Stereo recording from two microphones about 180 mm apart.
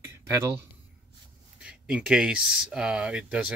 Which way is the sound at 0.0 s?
15° right (ahead or behind).